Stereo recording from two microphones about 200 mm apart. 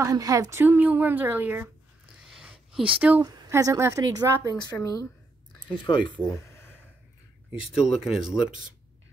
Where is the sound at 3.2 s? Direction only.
20° right (ahead or behind).